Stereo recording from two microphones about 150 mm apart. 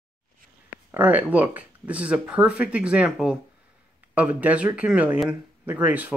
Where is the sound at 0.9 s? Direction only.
10° right (ahead or behind).